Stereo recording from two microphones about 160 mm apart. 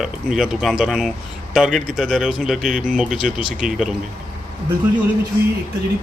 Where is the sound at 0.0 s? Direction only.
5° right (ahead or behind).